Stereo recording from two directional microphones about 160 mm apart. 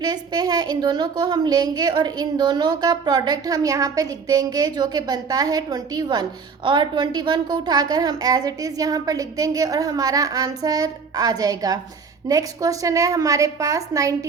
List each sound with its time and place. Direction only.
0.0 s speech: 25° right (ahead or behind)